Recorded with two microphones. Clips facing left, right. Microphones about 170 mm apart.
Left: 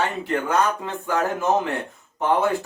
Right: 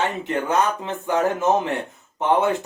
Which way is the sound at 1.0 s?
20° right (ahead or behind).